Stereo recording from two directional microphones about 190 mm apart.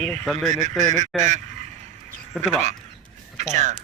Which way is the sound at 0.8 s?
40° right (ahead or behind).